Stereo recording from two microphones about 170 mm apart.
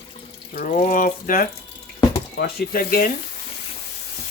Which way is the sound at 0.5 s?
50° left (ahead or behind).